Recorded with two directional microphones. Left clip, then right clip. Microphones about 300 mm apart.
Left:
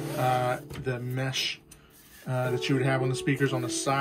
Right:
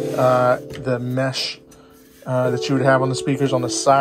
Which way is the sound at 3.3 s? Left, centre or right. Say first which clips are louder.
Right 7 dB; centre.